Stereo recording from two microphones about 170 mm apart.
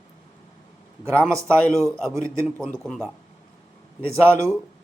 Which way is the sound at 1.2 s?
5° left (ahead or behind).